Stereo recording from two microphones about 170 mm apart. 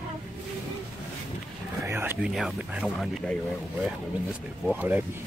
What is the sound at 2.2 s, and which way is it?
Speech, 5° right (ahead or behind).